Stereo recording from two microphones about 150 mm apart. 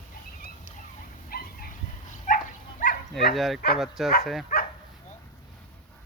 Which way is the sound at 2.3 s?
65° left (ahead or behind).